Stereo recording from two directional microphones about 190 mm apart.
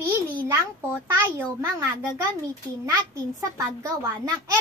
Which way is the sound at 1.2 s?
10° right (ahead or behind).